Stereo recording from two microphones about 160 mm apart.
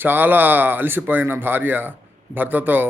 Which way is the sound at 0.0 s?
10° right (ahead or behind).